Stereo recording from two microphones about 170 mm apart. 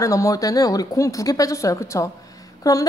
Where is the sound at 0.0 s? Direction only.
20° left (ahead or behind).